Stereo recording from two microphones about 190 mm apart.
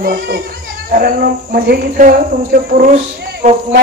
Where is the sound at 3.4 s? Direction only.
40° right (ahead or behind).